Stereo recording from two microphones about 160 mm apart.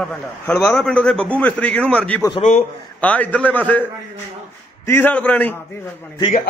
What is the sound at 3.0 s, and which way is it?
Speech, 10° left (ahead or behind).